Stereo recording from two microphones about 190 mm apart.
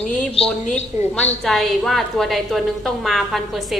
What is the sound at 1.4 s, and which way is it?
A woman's voice, centre (ahead or behind).